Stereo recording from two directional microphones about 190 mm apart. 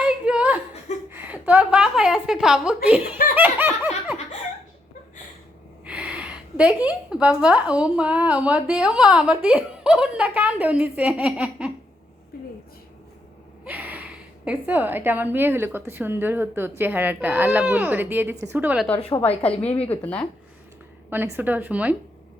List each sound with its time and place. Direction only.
0.0 s a sound: 5° right (ahead or behind)
3.3 s laughter: 10° right (ahead or behind)
5.8 s a sound: 5° right (ahead or behind)
6.8 s a woman's voice: 5° right (ahead or behind)
12.3 s a sound: 50° left (ahead or behind)
13.7 s a woman's voice: 10° right (ahead or behind)
19.4 s a woman's voice: 5° left (ahead or behind)
19.7 s a woman's voice: 30° left (ahead or behind)
20.0 s a woman's voice: 5° left (ahead or behind)
21.1 s a woman's voice: 10° right (ahead or behind)